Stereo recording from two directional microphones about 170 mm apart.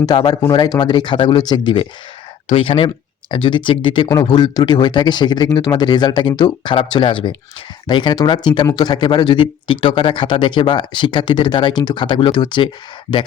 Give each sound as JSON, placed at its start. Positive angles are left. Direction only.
{"t": 0.0, "sound": "speech", "side_deg": 25}